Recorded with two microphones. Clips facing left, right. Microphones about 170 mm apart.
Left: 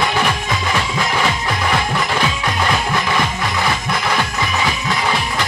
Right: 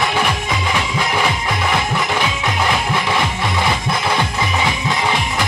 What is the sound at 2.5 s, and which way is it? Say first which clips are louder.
Music: even; 25° right (ahead or behind).